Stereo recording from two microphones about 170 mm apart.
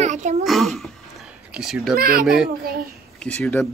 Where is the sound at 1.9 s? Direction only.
60° right (ahead or behind).